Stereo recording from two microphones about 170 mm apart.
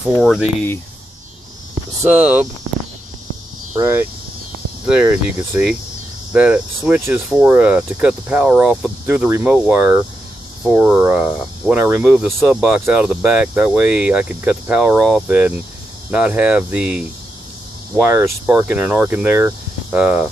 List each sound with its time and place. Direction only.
2.0 s speech: 10° right (ahead or behind)
3.7 s speech: 15° right (ahead or behind)